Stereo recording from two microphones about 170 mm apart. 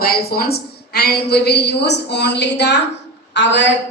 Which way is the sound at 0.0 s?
65° left (ahead or behind).